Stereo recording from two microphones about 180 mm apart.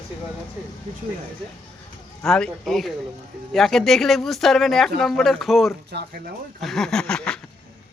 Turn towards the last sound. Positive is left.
turn(degrees=5)  # may be behind; listen again after turning